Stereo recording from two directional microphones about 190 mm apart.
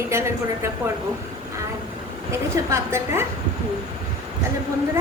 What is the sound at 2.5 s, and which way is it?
Speech, 15° right (ahead or behind).